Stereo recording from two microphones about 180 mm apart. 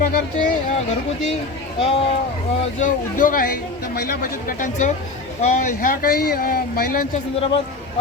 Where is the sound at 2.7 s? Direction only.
45° left (ahead or behind).